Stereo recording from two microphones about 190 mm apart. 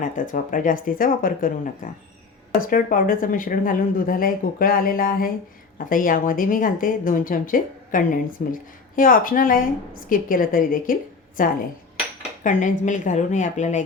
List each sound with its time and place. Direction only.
0.0 s a woman's voice: 45° left (ahead or behind)